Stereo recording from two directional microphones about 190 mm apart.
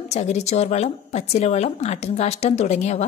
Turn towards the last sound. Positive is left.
turn(degrees=35)  # may be behind; listen again after turning